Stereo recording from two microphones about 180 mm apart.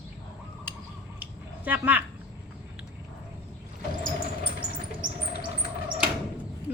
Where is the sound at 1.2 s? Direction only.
10° right (ahead or behind).